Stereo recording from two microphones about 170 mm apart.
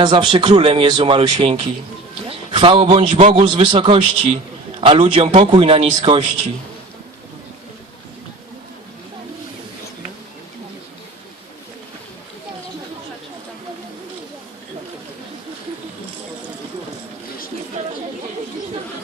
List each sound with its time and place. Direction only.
0.0 s a man's voice: 25° right (ahead or behind)
17.8 s chatter: 40° right (ahead or behind)